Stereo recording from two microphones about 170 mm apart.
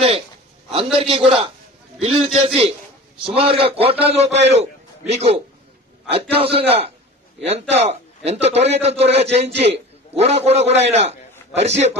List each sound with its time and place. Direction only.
0.9 s a man's voice: 30° right (ahead or behind)